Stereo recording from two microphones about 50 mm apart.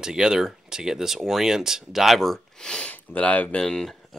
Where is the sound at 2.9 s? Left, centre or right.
Left.